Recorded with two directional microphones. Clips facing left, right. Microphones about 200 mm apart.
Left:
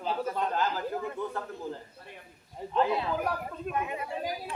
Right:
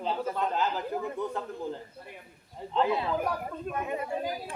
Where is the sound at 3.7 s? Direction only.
40° right (ahead or behind).